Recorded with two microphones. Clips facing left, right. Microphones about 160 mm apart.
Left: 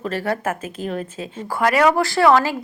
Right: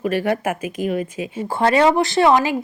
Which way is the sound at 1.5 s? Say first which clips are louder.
Right 1 dB; 25° right (ahead or behind).